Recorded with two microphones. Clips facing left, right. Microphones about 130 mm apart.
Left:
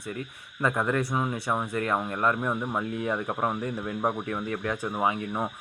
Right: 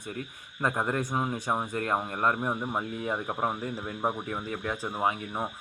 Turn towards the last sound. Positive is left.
turn(degrees=15)  # may be behind; listen again after turning